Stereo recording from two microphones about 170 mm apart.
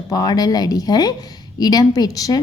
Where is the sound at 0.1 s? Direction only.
20° left (ahead or behind).